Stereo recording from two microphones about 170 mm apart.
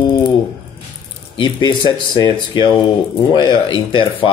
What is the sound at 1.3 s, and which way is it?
Speech, 25° left (ahead or behind).